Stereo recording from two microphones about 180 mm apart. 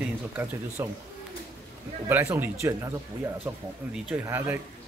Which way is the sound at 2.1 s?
10° right (ahead or behind).